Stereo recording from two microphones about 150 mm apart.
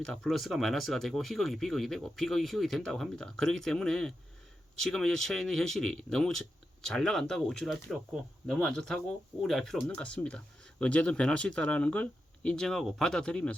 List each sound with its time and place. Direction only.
0.0 s speech: centre (ahead or behind)